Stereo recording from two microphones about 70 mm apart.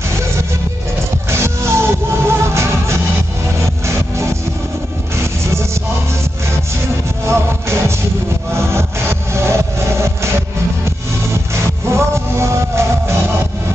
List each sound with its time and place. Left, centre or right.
1.3 s music: right
5.1 s music: right
7.2 s music: right
9.3 s vehicle: right
11.9 s music: right